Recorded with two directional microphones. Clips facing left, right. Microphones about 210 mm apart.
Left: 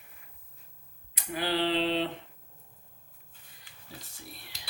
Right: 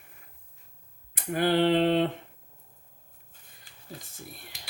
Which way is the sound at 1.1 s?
50° right (ahead or behind).